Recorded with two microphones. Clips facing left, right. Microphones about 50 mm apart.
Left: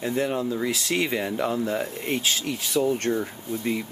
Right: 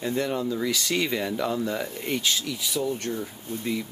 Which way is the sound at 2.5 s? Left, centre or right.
Left.